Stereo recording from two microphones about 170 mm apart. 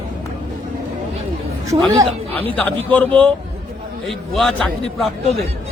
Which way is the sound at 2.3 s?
10° left (ahead or behind).